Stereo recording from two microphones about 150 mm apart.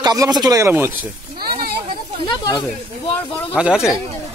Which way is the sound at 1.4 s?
90° right.